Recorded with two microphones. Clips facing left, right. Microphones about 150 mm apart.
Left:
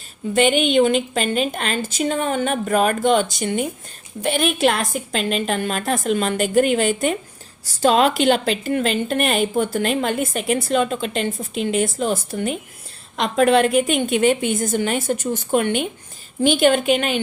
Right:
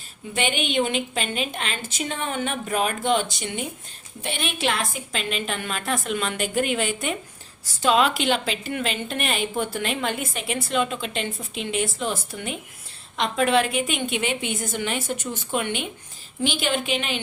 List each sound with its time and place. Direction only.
0.3 s a woman's voice: 45° left (ahead or behind)